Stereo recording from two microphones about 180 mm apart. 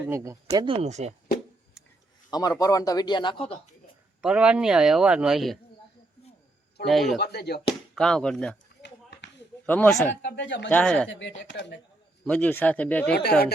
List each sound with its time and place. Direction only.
0.0 s speech: 15° right (ahead or behind)
0.5 s speech: 25° right (ahead or behind)
2.3 s speech: 20° left (ahead or behind)
4.2 s speech: 5° right (ahead or behind)
6.8 s speech: centre (ahead or behind)
7.2 s speech: 65° left (ahead or behind)
7.9 s speech: 5° left (ahead or behind)
8.8 s a sound: 75° left (ahead or behind)
9.6 s speech: 10° left (ahead or behind)
10.2 s speech: 85° left
10.7 s speech: 5° left (ahead or behind)
11.1 s speech: 80° left
12.2 s speech: 10° left (ahead or behind)